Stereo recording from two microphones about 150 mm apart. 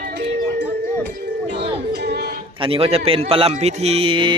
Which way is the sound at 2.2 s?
90° right.